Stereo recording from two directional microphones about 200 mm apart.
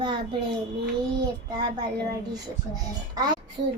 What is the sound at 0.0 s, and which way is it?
Child singing, 25° right (ahead or behind).